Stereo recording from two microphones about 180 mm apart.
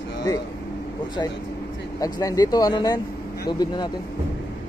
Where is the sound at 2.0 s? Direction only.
20° left (ahead or behind).